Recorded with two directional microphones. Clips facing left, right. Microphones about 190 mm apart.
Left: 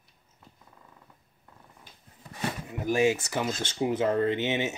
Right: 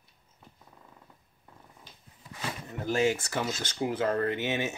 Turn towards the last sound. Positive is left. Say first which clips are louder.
# left 3 dB
turn(degrees=20)  # may be behind; listen again after turning